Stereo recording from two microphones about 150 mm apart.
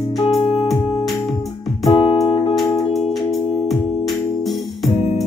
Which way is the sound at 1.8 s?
30° left (ahead or behind).